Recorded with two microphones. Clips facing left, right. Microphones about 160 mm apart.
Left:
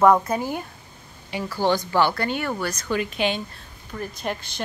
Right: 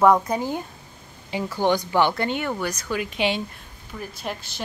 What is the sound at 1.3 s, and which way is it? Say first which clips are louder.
A woman's voice: right 1 dB; 20° right (ahead or behind).